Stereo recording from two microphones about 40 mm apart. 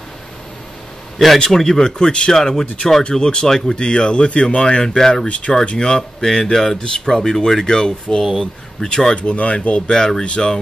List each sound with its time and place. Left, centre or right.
1.1 s a man's voice: centre
1.4 s speech: centre
2.3 s speech: centre
3.0 s speech: left
4.8 s speech: centre
5.3 s speech: left
9.1 s speech: left
9.8 s speech: centre